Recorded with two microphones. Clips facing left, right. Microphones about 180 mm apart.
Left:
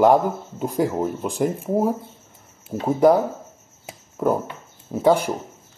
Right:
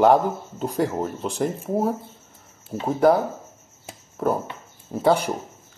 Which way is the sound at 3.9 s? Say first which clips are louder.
Left 2 dB; 10° left (ahead or behind).